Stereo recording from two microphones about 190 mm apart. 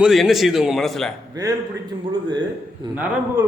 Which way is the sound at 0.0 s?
Centre (ahead or behind).